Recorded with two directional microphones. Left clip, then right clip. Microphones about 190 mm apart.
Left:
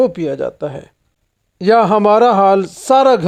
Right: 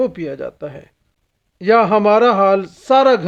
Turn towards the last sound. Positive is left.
turn(degrees=30)  # may be behind; listen again after turning